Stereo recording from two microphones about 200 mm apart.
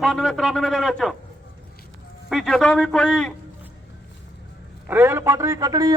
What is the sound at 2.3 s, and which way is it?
A man's voice, centre (ahead or behind).